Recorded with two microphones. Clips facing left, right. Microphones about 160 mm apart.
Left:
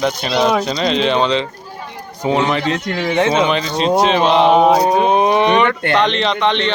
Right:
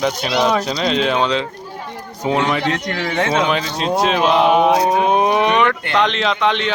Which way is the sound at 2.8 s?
25° left (ahead or behind).